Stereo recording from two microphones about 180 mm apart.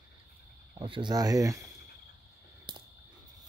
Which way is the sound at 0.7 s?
25° right (ahead or behind).